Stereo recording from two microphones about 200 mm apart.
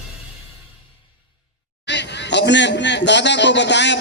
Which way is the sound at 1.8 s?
60° left (ahead or behind).